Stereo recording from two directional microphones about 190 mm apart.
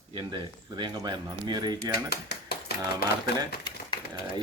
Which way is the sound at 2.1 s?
60° left (ahead or behind).